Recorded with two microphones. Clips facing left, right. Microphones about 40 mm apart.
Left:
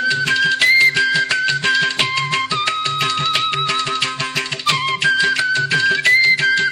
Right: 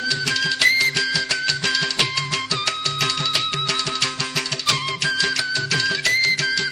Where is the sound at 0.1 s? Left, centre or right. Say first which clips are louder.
Left 5 dB; left.